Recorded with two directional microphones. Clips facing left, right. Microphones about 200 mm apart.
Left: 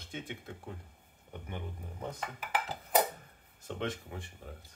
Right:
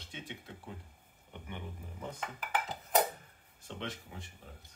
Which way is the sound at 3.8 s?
50° left (ahead or behind).